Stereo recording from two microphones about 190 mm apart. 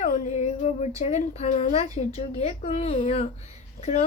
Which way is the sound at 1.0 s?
35° left (ahead or behind).